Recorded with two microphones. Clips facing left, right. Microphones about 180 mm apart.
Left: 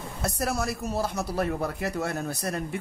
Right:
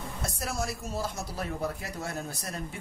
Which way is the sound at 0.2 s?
65° left (ahead or behind).